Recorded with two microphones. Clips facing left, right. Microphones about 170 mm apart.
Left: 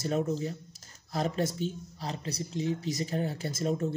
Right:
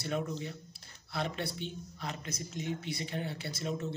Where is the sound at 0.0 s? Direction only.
40° left (ahead or behind).